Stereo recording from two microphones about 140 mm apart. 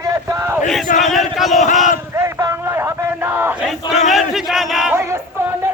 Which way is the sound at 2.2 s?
20° right (ahead or behind).